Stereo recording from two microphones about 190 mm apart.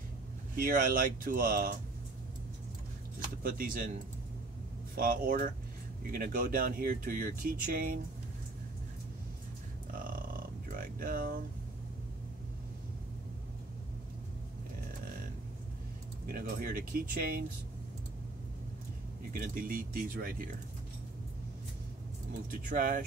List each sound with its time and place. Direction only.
0.6 s speech: 45° right (ahead or behind)
3.4 s speech: 45° right (ahead or behind)
4.9 s speech: 50° right (ahead or behind)
10.8 s speech: 50° right (ahead or behind)
16.3 s speech: 50° right (ahead or behind)
19.3 s speech: 50° right (ahead or behind)
22.7 s speech: 45° right (ahead or behind)